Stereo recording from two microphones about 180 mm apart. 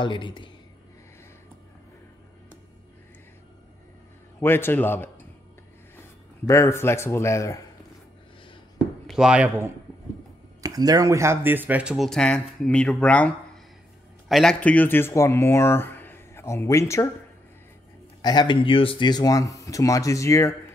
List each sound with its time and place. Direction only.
0.0 s speech: 25° left (ahead or behind)
4.4 s speech: 10° left (ahead or behind)
8.7 s chop: 5° right (ahead or behind)
10.6 s speech: 20° right (ahead or behind); by 13.3 s 5° left (ahead or behind)
14.3 s speech: 5° left (ahead or behind)
18.2 s speech: 25° left (ahead or behind)